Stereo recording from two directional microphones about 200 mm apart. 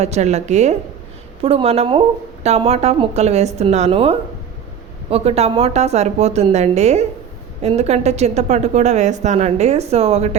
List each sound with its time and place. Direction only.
0.0 s a woman's voice: 35° right (ahead or behind)